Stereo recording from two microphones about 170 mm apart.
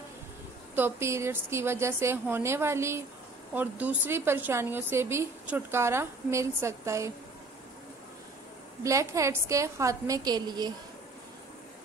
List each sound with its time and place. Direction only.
0.7 s a woman's voice: 15° right (ahead or behind)
8.8 s a woman's voice: 20° right (ahead or behind)